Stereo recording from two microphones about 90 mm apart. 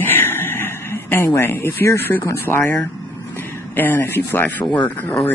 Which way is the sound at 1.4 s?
25° left (ahead or behind).